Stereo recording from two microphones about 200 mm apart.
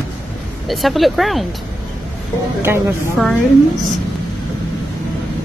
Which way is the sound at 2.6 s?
10° right (ahead or behind).